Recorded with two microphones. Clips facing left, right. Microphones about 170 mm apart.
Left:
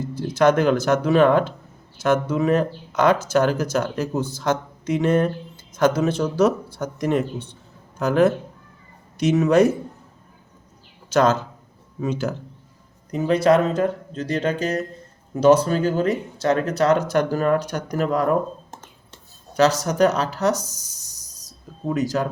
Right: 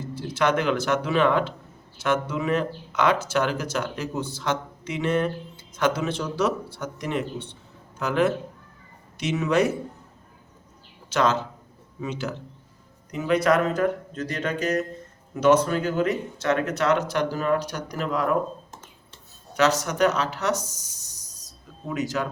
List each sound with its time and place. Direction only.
0.1 s a man's voice: 45° left (ahead or behind)
11.1 s a man's voice: 45° left (ahead or behind)
19.5 s speech: 35° left (ahead or behind)